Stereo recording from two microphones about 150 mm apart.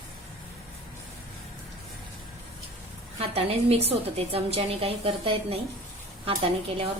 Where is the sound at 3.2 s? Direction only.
40° right (ahead or behind).